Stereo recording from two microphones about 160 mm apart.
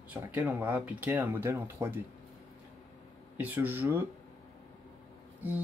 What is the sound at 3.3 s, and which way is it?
Speech, 10° right (ahead or behind).